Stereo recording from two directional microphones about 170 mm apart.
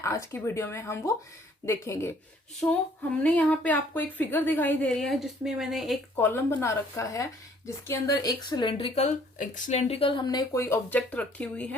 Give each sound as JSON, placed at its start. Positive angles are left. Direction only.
{"t": 0.0, "sound": "a woman's voice", "side_deg": 15}
{"t": 3.2, "sound": "a woman's voice", "side_deg": 10}
{"t": 6.1, "sound": "a woman's voice", "side_deg": 10}